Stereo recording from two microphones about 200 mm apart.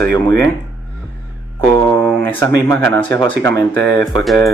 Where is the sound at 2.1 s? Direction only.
10° left (ahead or behind).